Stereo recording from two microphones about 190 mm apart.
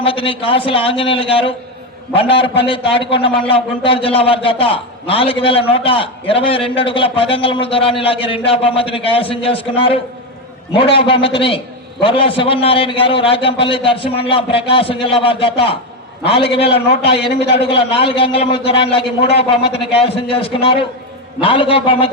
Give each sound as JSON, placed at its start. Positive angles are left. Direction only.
{"t": 0.0, "sound": "a man's voice", "side_deg": 30}